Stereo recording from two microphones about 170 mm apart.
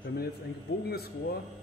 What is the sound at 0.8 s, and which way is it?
Speech, 65° left (ahead or behind).